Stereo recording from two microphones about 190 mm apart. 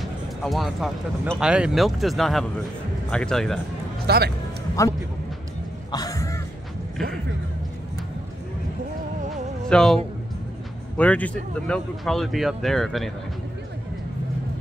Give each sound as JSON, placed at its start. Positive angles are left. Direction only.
{"t": 0.0, "sound": "speech", "side_deg": 0}
{"t": 4.1, "sound": "speech", "side_deg": -55}
{"t": 4.8, "sound": "a man's voice", "side_deg": 15}
{"t": 5.9, "sound": "a sound", "side_deg": 20}
{"t": 9.7, "sound": "a man's voice", "side_deg": 5}
{"t": 11.0, "sound": "speech", "side_deg": 5}